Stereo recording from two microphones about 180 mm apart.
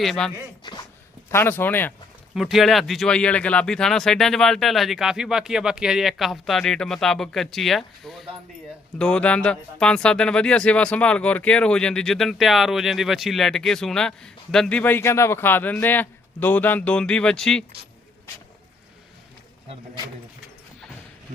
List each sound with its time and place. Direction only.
0.0 s speech: centre (ahead or behind)
0.6 s speech: 25° left (ahead or behind)
1.3 s speech: 10° left (ahead or behind)
2.3 s speech: centre (ahead or behind)